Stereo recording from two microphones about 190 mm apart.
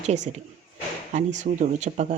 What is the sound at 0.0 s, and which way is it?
Speech, 35° right (ahead or behind).